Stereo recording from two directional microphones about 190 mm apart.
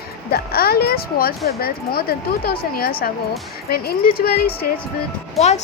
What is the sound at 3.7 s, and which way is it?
Speech, 50° left (ahead or behind).